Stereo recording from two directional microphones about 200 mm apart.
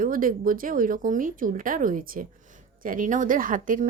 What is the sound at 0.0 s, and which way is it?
Speech, 45° right (ahead or behind).